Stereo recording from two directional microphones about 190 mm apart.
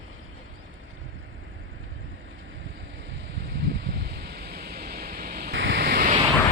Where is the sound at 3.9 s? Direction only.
60° right (ahead or behind).